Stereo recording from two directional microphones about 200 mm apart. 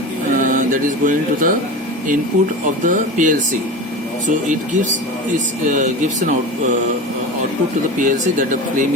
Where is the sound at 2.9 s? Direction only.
40° right (ahead or behind).